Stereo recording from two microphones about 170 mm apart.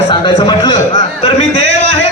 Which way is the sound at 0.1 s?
25° left (ahead or behind).